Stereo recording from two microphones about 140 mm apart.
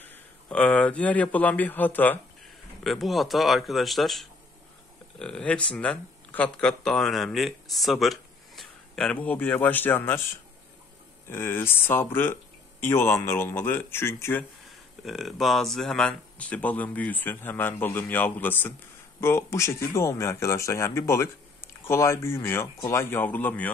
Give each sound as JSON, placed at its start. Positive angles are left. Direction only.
{"t": 0.0, "sound": "speech", "side_deg": 10}
{"t": 2.8, "sound": "speech", "side_deg": 0}
{"t": 11.2, "sound": "speech", "side_deg": 15}
{"t": 15.0, "sound": "speech", "side_deg": 0}